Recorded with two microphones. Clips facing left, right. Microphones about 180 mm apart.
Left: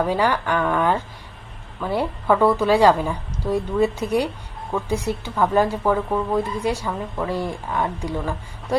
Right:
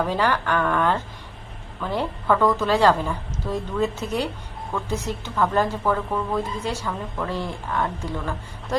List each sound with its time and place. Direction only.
0.0 s speech: 10° left (ahead or behind)